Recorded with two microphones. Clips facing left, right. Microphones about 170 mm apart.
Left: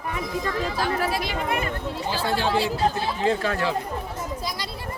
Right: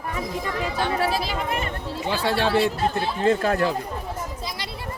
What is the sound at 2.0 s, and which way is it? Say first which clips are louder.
Speech: right 2 dB; 70° right (ahead or behind).